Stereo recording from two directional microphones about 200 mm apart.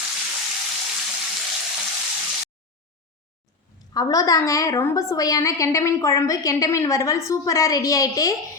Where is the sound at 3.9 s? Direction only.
20° left (ahead or behind).